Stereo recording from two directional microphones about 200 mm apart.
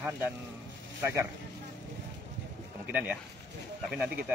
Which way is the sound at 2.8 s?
5° right (ahead or behind).